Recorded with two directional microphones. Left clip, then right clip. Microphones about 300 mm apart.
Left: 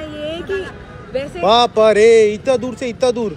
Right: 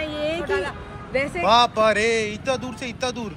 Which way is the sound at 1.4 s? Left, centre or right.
Centre.